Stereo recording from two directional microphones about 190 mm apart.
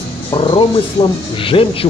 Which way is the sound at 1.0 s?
15° left (ahead or behind).